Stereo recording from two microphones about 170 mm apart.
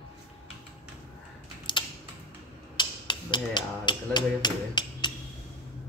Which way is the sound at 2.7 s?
25° left (ahead or behind).